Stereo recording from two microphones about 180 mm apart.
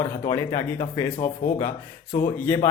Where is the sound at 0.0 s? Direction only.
20° left (ahead or behind).